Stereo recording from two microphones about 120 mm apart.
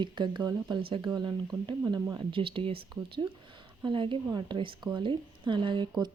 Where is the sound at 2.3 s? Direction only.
45° right (ahead or behind).